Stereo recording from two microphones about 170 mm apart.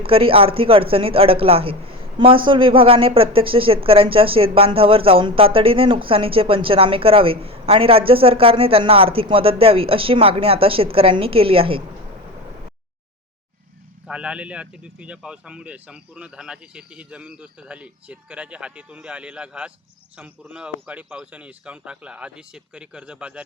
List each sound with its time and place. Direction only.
0.1 s a woman's voice: 35° right (ahead or behind)
14.1 s speech: 5° right (ahead or behind)